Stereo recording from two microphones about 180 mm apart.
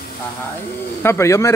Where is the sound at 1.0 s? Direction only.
15° left (ahead or behind).